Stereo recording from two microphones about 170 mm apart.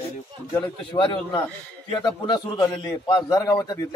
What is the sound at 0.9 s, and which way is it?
A man's voice, 30° left (ahead or behind).